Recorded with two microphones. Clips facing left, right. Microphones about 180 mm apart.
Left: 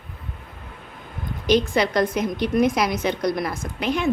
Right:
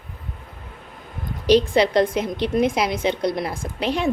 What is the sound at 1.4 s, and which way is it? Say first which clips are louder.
A woman's voice: right 3 dB; 30° right (ahead or behind).